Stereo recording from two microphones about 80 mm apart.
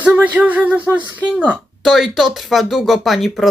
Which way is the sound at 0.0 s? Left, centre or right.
Centre.